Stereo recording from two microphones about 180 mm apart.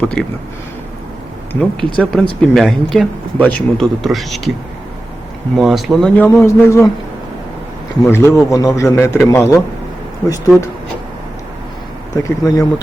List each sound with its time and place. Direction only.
0.0 s a man's voice: 5° left (ahead or behind)
1.5 s speech: 5° left (ahead or behind)
5.5 s speech: centre (ahead or behind); by 6.8 s 15° left (ahead or behind)
8.1 s a man's voice: 15° left (ahead or behind)
12.1 s speech: 20° left (ahead or behind)